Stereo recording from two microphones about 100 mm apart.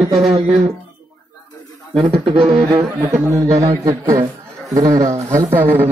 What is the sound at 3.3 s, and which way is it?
A man's voice, 30° right (ahead or behind).